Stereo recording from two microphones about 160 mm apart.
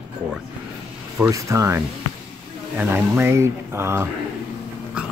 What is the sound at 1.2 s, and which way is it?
Speech, 20° right (ahead or behind).